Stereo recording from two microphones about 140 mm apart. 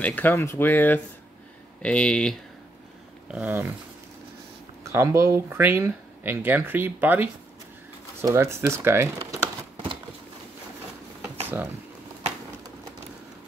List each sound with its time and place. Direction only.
0.0 s speech: 15° left (ahead or behind)
3.3 s speech: 15° right (ahead or behind)
4.8 s speech: 20° right (ahead or behind)
11.4 s a sound: 15° right (ahead or behind)